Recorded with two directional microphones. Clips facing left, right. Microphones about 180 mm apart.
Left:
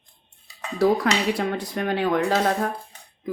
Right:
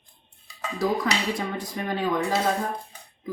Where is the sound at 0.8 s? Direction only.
65° left (ahead or behind).